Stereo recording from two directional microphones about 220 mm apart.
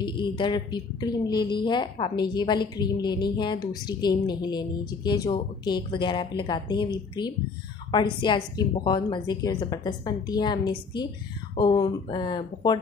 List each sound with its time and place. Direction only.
0.0 s a woman's voice: 20° left (ahead or behind)